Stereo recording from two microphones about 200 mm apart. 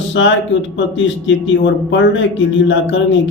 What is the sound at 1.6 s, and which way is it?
Speech, 65° left (ahead or behind).